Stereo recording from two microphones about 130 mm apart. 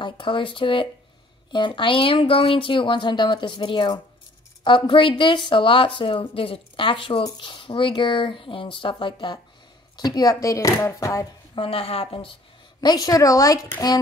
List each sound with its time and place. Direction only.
0.0 s a woman's voice: 40° left (ahead or behind); by 11.2 s 25° left (ahead or behind)
11.5 s speech: 45° left (ahead or behind)
12.8 s speech: 30° left (ahead or behind)